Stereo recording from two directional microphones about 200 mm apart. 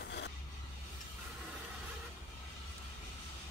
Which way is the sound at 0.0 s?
55° left (ahead or behind).